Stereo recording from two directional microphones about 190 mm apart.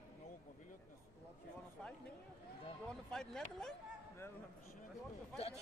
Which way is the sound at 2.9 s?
5° left (ahead or behind).